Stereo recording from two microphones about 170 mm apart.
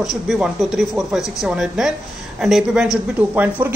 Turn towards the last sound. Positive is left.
turn(degrees=-10)  # may be behind; listen again after turning